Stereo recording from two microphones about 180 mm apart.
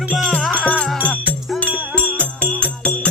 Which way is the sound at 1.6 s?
5° right (ahead or behind).